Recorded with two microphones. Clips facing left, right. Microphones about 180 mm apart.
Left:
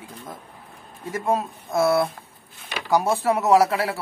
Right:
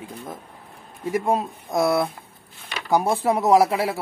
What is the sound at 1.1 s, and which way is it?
Speech, 15° right (ahead or behind).